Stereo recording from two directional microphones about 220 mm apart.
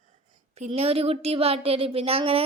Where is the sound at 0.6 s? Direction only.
30° right (ahead or behind).